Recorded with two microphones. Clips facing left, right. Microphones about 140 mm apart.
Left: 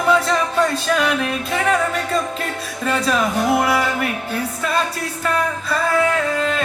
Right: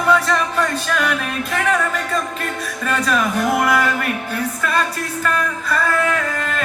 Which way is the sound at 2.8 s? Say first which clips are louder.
Left 1 dB; 30° left (ahead or behind).